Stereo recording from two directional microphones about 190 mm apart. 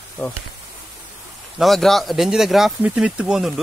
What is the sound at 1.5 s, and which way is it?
Speech, centre (ahead or behind).